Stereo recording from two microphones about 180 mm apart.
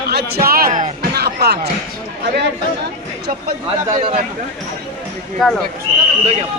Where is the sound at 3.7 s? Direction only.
35° right (ahead or behind).